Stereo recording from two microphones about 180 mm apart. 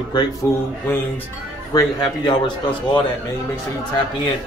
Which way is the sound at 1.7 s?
25° left (ahead or behind).